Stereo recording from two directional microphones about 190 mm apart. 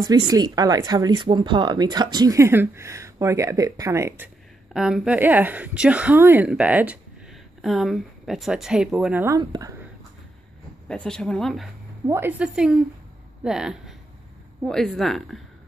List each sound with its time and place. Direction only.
0.0 s speech: 20° right (ahead or behind)
4.7 s speech: 5° right (ahead or behind); by 9.8 s 20° right (ahead or behind)
10.9 s speech: 5° left (ahead or behind)
12.1 s speech: 10° right (ahead or behind)